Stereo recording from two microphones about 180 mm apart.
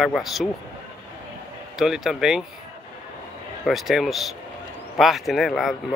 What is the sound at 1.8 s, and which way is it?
Speech, centre (ahead or behind).